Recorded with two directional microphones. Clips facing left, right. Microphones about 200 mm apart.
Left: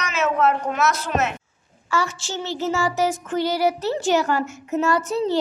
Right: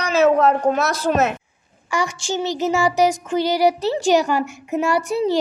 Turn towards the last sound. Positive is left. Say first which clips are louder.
# right 2 dB
turn(degrees=-15)  # may be behind; listen again after turning